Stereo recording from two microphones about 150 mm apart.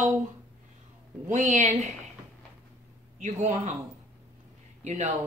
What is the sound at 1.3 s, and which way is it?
Speech, 55° right (ahead or behind).